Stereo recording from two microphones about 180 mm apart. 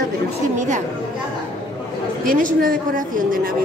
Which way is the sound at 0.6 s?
45° right (ahead or behind).